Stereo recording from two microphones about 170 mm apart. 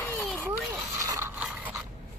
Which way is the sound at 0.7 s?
15° right (ahead or behind).